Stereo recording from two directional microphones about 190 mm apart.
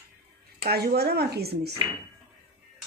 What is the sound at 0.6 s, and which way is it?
A woman's voice, 55° right (ahead or behind).